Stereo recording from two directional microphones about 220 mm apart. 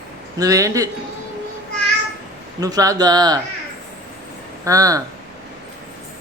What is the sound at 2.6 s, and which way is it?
Speech, 15° right (ahead or behind).